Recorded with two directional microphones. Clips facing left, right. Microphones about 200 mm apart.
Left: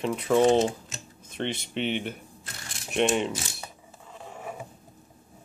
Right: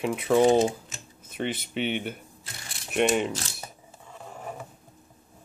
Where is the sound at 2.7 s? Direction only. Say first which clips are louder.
Right 1 dB; centre (ahead or behind).